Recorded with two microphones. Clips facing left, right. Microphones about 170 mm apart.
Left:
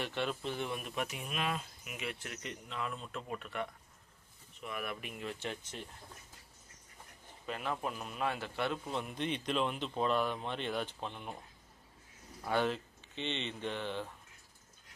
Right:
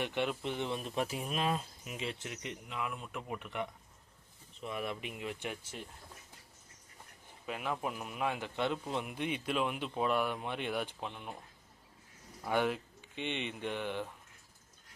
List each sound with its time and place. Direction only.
0.0 s speech: 15° right (ahead or behind)
4.6 s speech: 25° right (ahead or behind); by 5.9 s 10° right (ahead or behind)
7.4 s speech: 10° right (ahead or behind)
11.1 s speech: centre (ahead or behind)
12.4 s speech: 15° right (ahead or behind)